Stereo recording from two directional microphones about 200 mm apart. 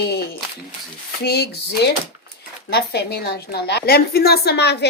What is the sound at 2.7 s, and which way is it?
A woman's voice, 55° left (ahead or behind).